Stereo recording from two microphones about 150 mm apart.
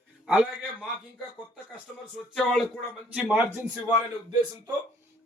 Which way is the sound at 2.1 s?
Centre (ahead or behind).